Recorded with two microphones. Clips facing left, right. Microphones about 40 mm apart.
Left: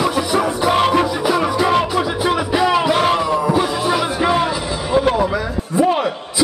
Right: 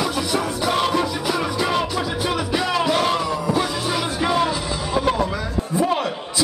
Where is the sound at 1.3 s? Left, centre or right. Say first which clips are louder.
Left 6 dB; centre.